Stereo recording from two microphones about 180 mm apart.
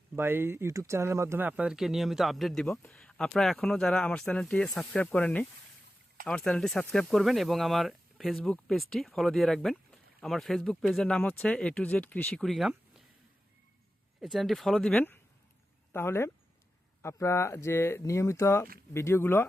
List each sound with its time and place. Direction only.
0.2 s speech: 10° right (ahead or behind)
14.2 s speech: centre (ahead or behind)